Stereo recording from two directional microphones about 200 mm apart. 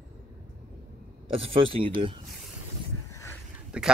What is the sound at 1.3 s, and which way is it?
Speech, 30° right (ahead or behind).